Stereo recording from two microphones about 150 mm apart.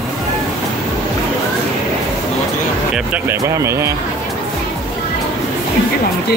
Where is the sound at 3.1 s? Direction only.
15° right (ahead or behind).